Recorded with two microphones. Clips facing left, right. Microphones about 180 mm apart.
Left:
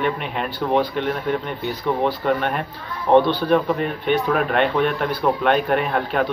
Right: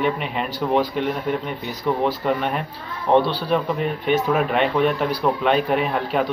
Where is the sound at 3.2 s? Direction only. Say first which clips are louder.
Left 4 dB; 35° right (ahead or behind).